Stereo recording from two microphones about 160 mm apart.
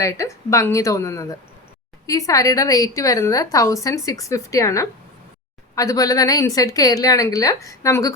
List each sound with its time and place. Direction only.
0.0 s a woman's voice: 20° left (ahead or behind)